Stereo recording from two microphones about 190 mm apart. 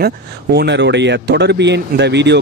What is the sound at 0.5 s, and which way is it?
Speech, 65° right (ahead or behind).